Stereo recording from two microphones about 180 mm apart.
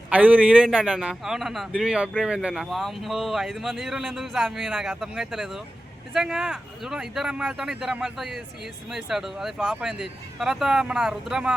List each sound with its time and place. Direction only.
0.1 s a man's voice: 10° right (ahead or behind)